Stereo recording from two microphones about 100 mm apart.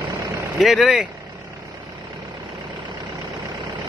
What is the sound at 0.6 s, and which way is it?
Speech, centre (ahead or behind).